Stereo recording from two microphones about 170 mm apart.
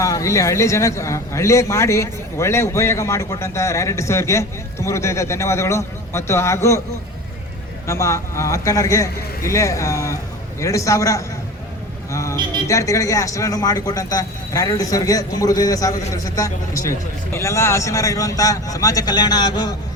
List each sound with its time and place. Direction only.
0.0 s a man's voice: 20° left (ahead or behind)
7.9 s a man's voice: 15° left (ahead or behind)